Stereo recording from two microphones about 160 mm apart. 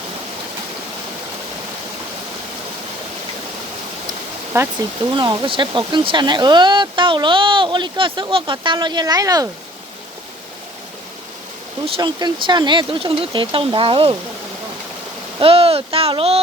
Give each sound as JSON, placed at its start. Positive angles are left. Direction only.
{"t": 4.5, "sound": "speech", "side_deg": -15}
{"t": 11.9, "sound": "speech", "side_deg": -30}
{"t": 15.4, "sound": "speech", "side_deg": -35}